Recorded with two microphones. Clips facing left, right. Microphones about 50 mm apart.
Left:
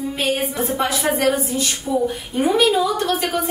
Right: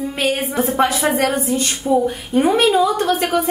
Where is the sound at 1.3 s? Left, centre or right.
Right.